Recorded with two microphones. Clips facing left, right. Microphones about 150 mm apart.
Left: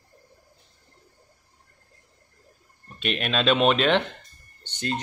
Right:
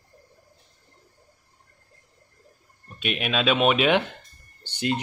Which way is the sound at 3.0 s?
5° right (ahead or behind).